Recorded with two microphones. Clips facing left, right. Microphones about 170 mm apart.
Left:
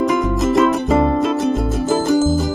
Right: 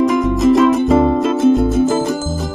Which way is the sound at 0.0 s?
Centre (ahead or behind).